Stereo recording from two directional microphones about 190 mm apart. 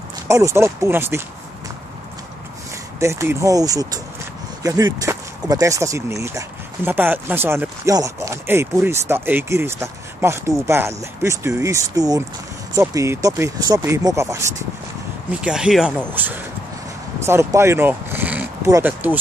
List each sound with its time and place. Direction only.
0.3 s speech: 15° right (ahead or behind)
3.0 s speech: 15° right (ahead or behind)
15.4 s speech: 5° right (ahead or behind)